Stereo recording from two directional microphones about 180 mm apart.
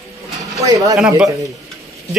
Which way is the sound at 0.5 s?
20° right (ahead or behind).